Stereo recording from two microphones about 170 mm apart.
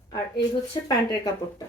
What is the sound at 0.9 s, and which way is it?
Speech, 20° left (ahead or behind).